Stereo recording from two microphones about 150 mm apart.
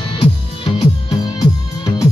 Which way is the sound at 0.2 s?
35° left (ahead or behind).